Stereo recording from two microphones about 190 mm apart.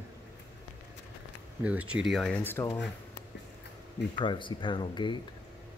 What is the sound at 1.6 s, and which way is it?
Speech, 5° right (ahead or behind).